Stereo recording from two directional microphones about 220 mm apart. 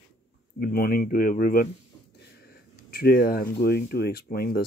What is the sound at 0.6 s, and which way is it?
Speech, 40° left (ahead or behind).